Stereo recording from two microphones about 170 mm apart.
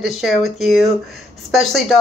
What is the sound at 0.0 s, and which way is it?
A man's voice, centre (ahead or behind).